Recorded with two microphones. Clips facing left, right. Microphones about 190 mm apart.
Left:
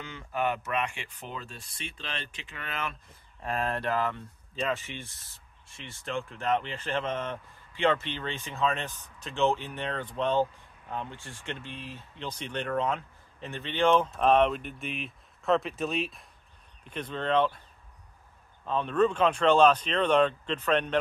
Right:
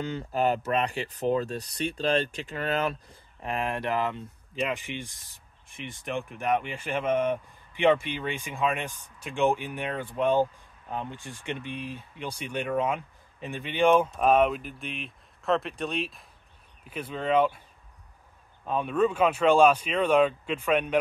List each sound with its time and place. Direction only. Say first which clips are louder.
0.0 s speech: right 5 dB; 35° right (ahead or behind)
3.4 s speech: right 1 dB; 15° right (ahead or behind)
18.7 s speech: even; 10° right (ahead or behind)